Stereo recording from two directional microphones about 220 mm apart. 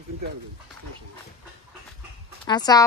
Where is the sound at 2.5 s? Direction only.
15° left (ahead or behind).